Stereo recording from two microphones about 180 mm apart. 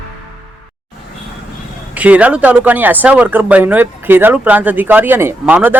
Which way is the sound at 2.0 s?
10° right (ahead or behind).